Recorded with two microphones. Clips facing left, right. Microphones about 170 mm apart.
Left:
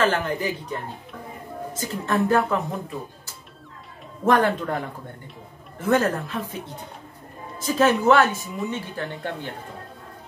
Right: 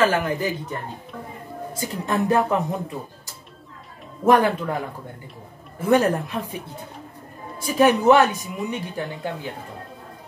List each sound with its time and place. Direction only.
0.0 s speech: 10° right (ahead or behind)
4.3 s speech: 10° right (ahead or behind)
5.8 s speech: 15° right (ahead or behind)
7.5 s speech: 15° right (ahead or behind)
9.0 s speech: centre (ahead or behind)